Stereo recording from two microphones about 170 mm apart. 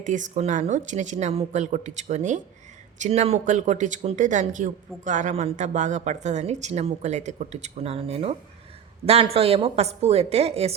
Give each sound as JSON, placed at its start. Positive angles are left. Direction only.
{"t": 0.0, "sound": "a woman's voice", "side_deg": -45}